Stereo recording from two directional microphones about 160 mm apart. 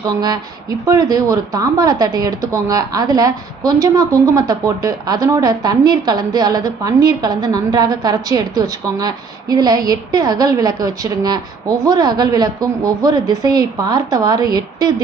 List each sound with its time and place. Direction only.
0.0 s speech: 25° right (ahead or behind)